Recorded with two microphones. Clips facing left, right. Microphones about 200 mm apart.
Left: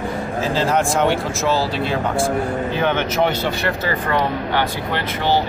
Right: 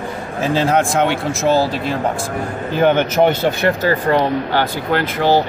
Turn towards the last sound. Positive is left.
turn(degrees=-35)  # may be behind; listen again after turning